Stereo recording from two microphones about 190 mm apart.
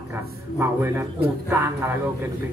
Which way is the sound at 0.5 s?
10° right (ahead or behind).